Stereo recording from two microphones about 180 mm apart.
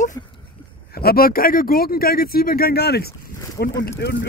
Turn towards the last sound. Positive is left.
turn(degrees=70)  # may be behind; listen again after turning